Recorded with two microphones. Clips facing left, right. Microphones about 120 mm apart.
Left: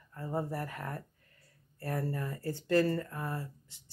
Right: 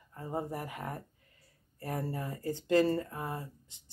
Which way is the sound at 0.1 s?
15° right (ahead or behind).